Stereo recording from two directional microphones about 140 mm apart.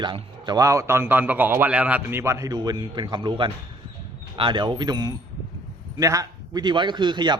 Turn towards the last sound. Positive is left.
turn(degrees=-35)  # may be behind; listen again after turning